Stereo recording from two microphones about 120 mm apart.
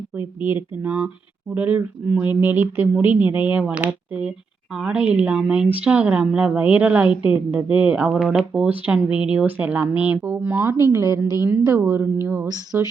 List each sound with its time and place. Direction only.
0.4 s speech: 20° right (ahead or behind)
12.5 s speech: 30° right (ahead or behind)